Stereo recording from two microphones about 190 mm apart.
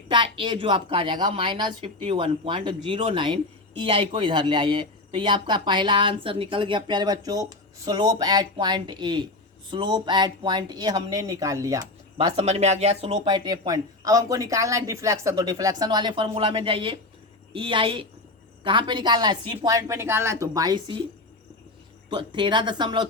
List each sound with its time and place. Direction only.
0.1 s a woman's voice: 25° right (ahead or behind)
12.1 s a woman's voice: 30° right (ahead or behind)
22.1 s a woman's voice: 25° right (ahead or behind)